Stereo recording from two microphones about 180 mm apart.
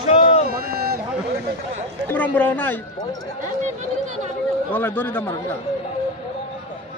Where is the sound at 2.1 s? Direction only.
10° left (ahead or behind).